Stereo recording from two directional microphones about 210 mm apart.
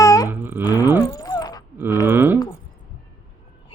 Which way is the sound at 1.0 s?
15° left (ahead or behind).